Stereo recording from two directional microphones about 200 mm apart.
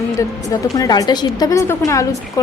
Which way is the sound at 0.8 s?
20° left (ahead or behind).